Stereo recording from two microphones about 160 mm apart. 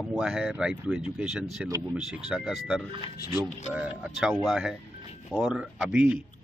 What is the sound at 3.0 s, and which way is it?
Speech, 25° left (ahead or behind).